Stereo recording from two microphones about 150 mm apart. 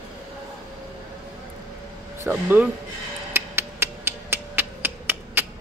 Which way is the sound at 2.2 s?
15° right (ahead or behind).